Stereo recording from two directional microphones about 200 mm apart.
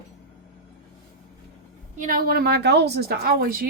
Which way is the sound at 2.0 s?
45° right (ahead or behind).